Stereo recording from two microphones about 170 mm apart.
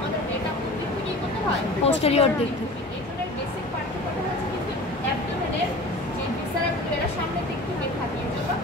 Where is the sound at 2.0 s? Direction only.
35° left (ahead or behind).